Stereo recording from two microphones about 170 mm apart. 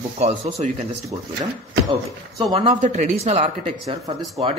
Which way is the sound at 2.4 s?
30° right (ahead or behind).